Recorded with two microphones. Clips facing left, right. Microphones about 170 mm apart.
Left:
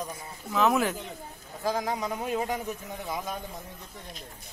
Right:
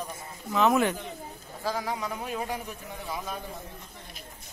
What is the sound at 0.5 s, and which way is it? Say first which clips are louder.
Speech: right 1 dB; centre (ahead or behind).